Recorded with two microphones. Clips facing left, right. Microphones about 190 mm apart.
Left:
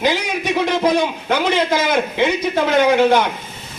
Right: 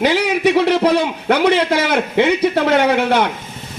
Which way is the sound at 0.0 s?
70° right (ahead or behind).